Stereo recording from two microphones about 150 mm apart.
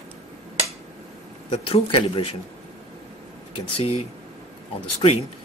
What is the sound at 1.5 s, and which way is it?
Speech, 40° left (ahead or behind).